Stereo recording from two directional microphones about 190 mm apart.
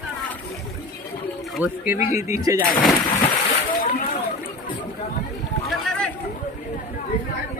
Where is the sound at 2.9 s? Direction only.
30° left (ahead or behind).